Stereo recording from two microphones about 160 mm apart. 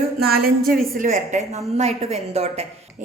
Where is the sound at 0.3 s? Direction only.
70° right (ahead or behind).